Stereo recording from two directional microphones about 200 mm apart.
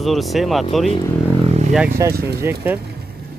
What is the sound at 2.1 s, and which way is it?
Speech, 50° right (ahead or behind).